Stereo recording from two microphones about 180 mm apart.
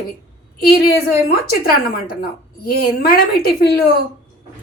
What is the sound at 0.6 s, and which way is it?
A woman's voice, 55° left (ahead or behind).